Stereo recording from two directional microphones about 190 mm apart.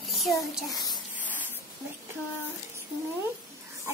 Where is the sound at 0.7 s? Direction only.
20° left (ahead or behind).